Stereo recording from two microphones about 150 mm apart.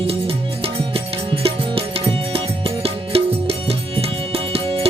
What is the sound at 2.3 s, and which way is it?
Music, 40° right (ahead or behind).